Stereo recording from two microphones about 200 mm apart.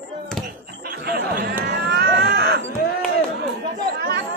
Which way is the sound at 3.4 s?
55° right (ahead or behind).